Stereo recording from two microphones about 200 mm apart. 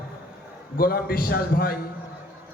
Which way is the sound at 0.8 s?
50° left (ahead or behind).